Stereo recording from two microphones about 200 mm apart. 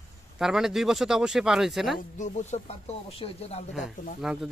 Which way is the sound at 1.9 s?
40° left (ahead or behind).